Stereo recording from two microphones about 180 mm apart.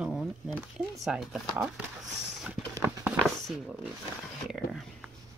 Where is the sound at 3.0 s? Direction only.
Centre (ahead or behind).